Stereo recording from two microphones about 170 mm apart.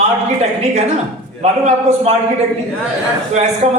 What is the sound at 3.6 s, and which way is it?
Speech, 45° right (ahead or behind).